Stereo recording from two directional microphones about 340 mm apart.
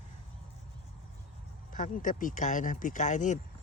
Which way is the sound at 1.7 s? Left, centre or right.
Left.